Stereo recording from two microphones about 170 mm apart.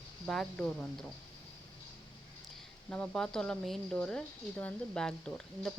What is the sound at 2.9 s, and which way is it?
Speech, 5° left (ahead or behind).